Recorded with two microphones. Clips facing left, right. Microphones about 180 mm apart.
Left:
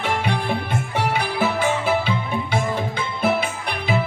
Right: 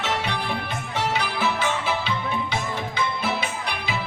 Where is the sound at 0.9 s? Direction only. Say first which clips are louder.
Left 3 dB; 55° left (ahead or behind).